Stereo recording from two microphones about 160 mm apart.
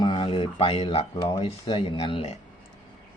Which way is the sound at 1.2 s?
25° left (ahead or behind).